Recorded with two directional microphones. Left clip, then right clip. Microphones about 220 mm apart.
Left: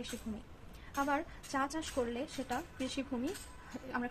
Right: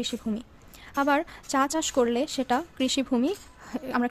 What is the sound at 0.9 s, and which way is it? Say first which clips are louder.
Speech: right 11 dB; 50° right (ahead or behind).